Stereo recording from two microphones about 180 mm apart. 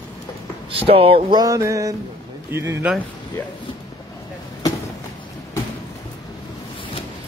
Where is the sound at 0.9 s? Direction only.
30° right (ahead or behind).